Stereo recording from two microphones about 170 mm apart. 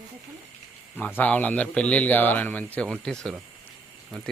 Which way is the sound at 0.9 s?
10° left (ahead or behind).